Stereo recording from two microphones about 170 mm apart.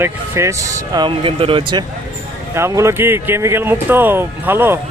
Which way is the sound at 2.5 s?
15° right (ahead or behind).